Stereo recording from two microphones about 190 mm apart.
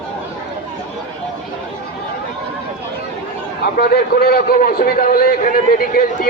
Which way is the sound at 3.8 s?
55° left (ahead or behind).